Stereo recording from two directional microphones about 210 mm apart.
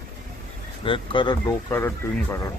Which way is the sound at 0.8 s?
25° left (ahead or behind).